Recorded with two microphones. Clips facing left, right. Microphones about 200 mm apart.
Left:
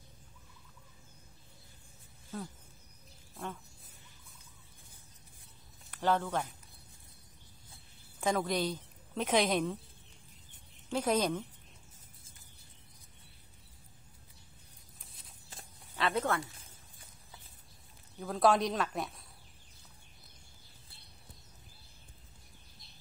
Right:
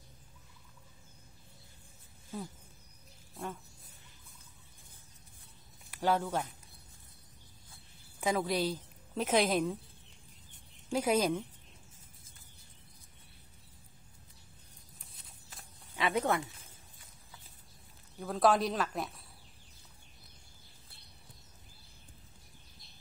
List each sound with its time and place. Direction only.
5.9 s speech: 10° right (ahead or behind)
8.2 s a woman's voice: 5° right (ahead or behind)
10.9 s a woman's voice: 10° right (ahead or behind)
16.0 s speech: 15° right (ahead or behind)
18.2 s speech: centre (ahead or behind)